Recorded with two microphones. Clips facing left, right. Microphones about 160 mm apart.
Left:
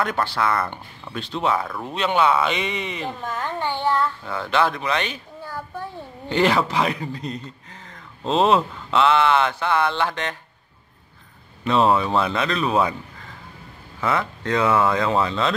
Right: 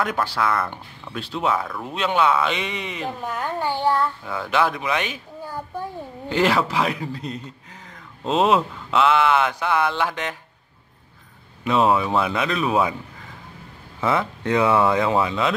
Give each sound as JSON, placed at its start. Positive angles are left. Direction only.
{"t": 0.0, "sound": "speech", "side_deg": -5}
{"t": 6.2, "sound": "speech", "side_deg": 0}
{"t": 11.6, "sound": "speech", "side_deg": -5}
{"t": 14.0, "sound": "speech", "side_deg": -20}